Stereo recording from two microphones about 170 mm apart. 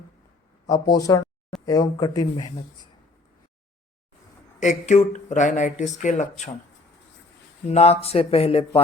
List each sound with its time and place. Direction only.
0.7 s speech: 20° left (ahead or behind)
4.6 s speech: 45° left (ahead or behind)
7.7 s speech: 40° left (ahead or behind)